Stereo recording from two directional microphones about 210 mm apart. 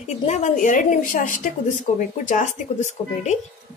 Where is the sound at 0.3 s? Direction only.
35° left (ahead or behind).